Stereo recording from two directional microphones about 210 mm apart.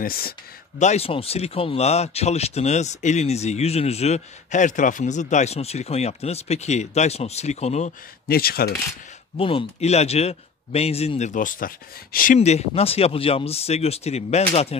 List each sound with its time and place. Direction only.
0.0 s speech: 45° left (ahead or behind)
0.7 s speech: 30° left (ahead or behind)
8.3 s speech: 45° left (ahead or behind)
9.4 s speech: 25° left (ahead or behind); by 12.4 s 40° left (ahead or behind)
12.4 s speech: 30° left (ahead or behind)